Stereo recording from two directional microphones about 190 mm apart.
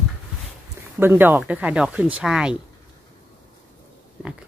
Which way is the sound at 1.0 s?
10° right (ahead or behind).